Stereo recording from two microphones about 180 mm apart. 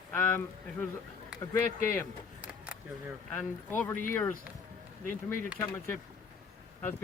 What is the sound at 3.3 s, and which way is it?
Speech, 10° left (ahead or behind).